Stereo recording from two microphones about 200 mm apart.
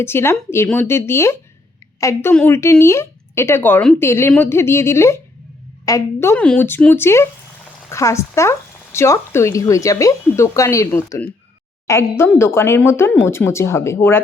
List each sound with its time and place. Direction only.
0.0 s speech: 10° left (ahead or behind)